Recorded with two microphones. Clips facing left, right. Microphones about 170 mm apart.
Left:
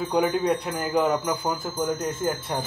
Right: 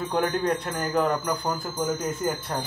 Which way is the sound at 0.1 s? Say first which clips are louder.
Left 2 dB; 5° left (ahead or behind).